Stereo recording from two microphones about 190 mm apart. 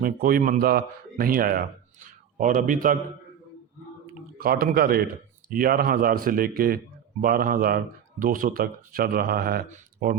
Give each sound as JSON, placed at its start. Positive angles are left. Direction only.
{"t": 0.0, "sound": "speech", "side_deg": -50}
{"t": 4.4, "sound": "speech", "side_deg": -50}